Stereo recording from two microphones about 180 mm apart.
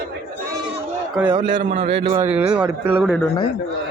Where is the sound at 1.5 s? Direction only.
30° right (ahead or behind).